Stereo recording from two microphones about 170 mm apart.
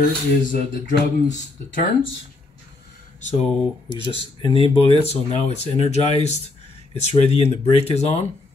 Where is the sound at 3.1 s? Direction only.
45° left (ahead or behind).